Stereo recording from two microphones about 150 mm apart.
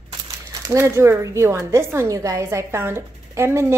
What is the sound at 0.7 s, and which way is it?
Speech, 20° right (ahead or behind).